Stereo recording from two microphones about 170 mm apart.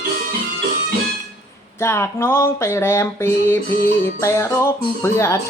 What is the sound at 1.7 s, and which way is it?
Music, 15° left (ahead or behind).